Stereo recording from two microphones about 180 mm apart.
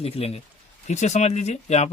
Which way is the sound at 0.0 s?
35° left (ahead or behind).